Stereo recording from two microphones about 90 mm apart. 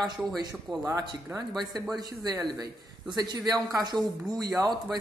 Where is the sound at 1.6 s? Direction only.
50° right (ahead or behind).